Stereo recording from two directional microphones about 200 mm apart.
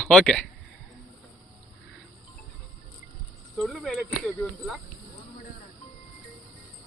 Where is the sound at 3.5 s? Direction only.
Centre (ahead or behind).